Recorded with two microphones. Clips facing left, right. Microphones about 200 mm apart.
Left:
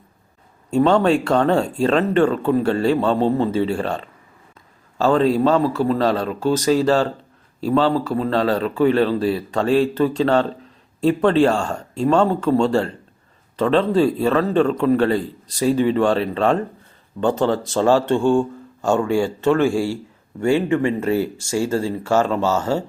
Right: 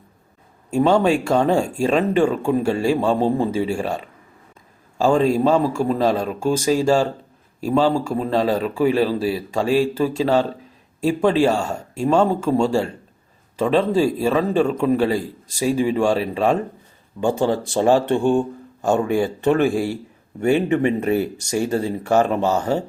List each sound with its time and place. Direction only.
0.7 s speech: 10° right (ahead or behind)